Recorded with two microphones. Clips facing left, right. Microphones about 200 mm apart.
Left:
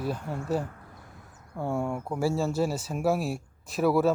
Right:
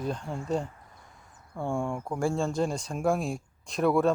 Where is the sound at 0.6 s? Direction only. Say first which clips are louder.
Left 4 dB; 60° left (ahead or behind).